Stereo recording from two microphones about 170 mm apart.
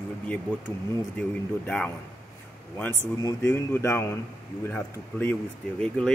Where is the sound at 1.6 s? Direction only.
5° left (ahead or behind).